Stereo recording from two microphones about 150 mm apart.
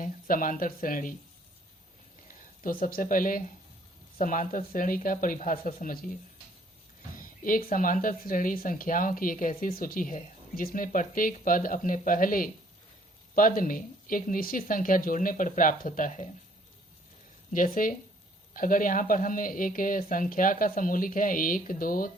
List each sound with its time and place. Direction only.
0.0 s speech: 65° left (ahead or behind)
2.8 s speech: 65° left (ahead or behind)
7.2 s speech: 65° left (ahead or behind)
17.5 s speech: 65° left (ahead or behind)